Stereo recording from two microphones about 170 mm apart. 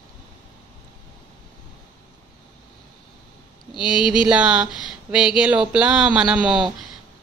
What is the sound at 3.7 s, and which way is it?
Speech, 5° right (ahead or behind).